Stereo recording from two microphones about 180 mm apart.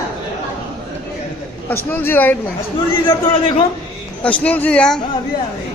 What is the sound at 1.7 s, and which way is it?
Speech, 10° left (ahead or behind).